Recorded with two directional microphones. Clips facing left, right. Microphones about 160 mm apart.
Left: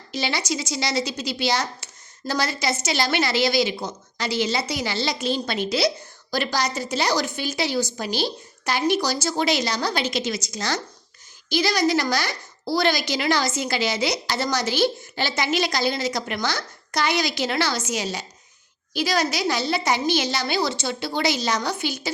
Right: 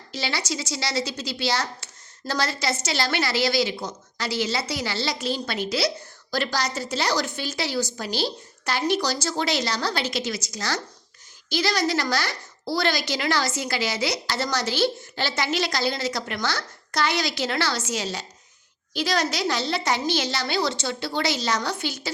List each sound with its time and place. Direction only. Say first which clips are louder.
0.1 s a woman's voice: left 3 dB; 15° left (ahead or behind)